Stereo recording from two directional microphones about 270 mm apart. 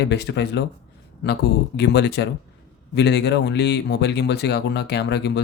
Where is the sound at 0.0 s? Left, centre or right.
Left.